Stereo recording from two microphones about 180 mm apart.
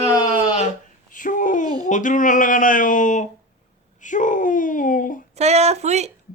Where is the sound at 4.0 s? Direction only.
45° left (ahead or behind).